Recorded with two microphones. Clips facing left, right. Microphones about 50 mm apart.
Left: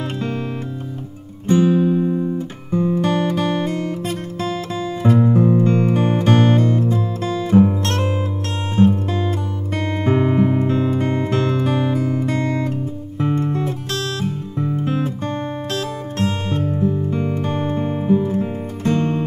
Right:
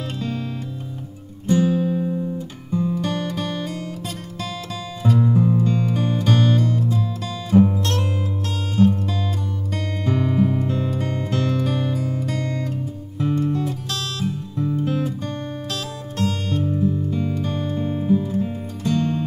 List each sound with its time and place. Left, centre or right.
1.5 s guitar: left
5.0 s music: left